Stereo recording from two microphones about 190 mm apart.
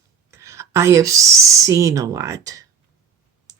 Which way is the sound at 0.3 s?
15° right (ahead or behind).